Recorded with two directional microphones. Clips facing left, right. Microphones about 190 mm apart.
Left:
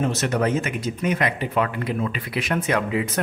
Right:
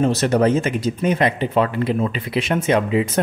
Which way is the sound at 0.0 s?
35° right (ahead or behind).